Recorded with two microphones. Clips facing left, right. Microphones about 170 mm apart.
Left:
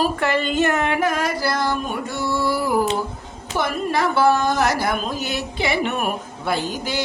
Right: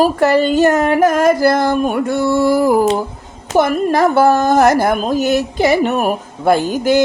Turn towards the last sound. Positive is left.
turn(degrees=-50)  # may be behind; listen again after turning